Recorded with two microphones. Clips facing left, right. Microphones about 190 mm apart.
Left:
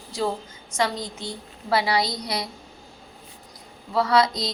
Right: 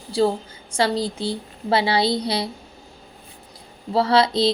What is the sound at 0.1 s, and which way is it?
Speech, 30° right (ahead or behind).